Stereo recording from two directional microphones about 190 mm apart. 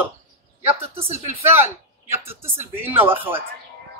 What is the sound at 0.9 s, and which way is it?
Speech, 35° right (ahead or behind).